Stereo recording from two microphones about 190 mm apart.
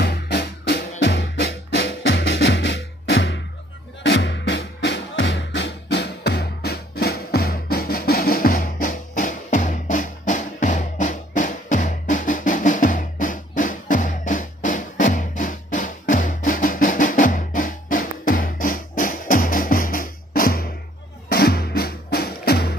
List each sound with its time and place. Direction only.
0.0 s music: 55° left (ahead or behind)
2.0 s music: 70° left (ahead or behind)
5.1 s music: 80° left; by 22.7 s 55° left (ahead or behind)